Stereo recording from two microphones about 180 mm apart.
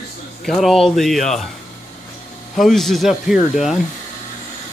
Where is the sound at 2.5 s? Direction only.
Centre (ahead or behind).